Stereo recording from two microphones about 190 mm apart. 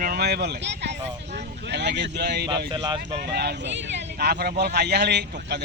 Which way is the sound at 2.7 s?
25° right (ahead or behind).